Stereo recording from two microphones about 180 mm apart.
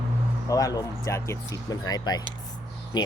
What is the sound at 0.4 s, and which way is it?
Speech, 20° left (ahead or behind).